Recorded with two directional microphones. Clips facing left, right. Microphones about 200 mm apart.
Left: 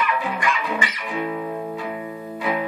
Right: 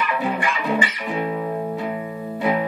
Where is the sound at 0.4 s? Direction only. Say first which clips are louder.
Right 2 dB; 30° right (ahead or behind).